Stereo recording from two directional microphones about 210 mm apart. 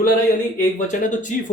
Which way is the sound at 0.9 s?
35° left (ahead or behind).